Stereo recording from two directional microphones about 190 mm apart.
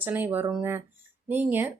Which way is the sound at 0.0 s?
10° right (ahead or behind).